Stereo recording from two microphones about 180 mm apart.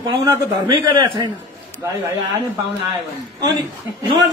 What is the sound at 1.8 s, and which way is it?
Speech, 15° right (ahead or behind).